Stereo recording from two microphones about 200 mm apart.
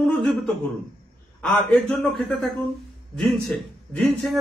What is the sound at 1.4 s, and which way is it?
A man's voice, 5° left (ahead or behind).